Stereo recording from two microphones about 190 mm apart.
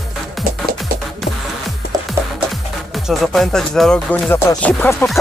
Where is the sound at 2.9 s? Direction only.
Centre (ahead or behind).